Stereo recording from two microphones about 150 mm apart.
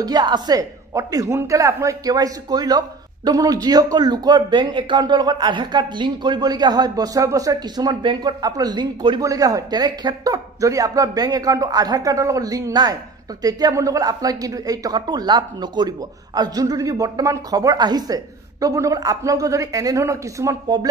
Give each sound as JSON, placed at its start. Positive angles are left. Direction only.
{"t": 0.0, "sound": "speech", "side_deg": -25}